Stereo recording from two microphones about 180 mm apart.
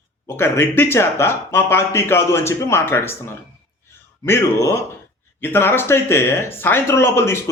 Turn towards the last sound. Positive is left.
turn(degrees=15)  # may be behind; listen again after turning